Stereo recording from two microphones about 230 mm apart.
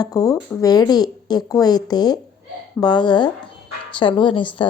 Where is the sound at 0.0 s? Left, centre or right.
Centre.